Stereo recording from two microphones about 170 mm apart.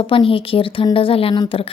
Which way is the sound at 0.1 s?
30° left (ahead or behind).